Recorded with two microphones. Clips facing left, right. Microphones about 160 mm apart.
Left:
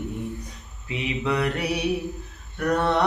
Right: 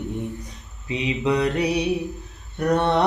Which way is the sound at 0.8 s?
20° right (ahead or behind).